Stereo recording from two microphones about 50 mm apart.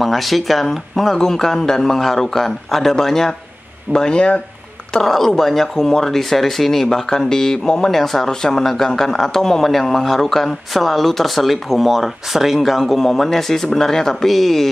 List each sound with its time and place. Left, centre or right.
0.0 s speech: centre
4.9 s speech: centre